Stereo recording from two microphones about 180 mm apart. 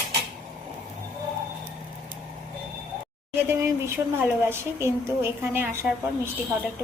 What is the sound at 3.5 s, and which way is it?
Speech, 15° right (ahead or behind).